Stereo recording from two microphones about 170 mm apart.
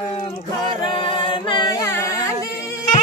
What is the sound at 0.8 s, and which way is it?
Chant, 30° left (ahead or behind).